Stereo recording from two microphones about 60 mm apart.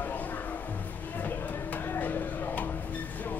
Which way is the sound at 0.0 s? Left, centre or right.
Left.